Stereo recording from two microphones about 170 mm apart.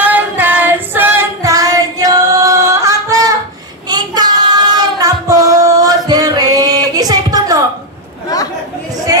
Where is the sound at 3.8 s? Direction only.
25° right (ahead or behind).